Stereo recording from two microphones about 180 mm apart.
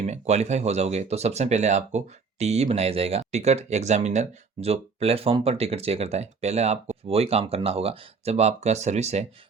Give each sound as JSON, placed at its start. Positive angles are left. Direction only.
{"t": 0.0, "sound": "speech", "side_deg": -40}